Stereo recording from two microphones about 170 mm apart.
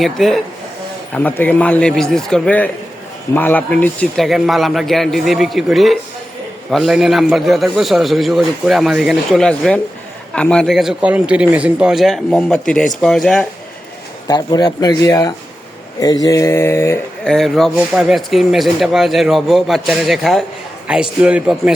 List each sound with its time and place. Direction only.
0.0 s a man's voice: centre (ahead or behind)
14.3 s a man's voice: 25° left (ahead or behind)
17.2 s a man's voice: centre (ahead or behind)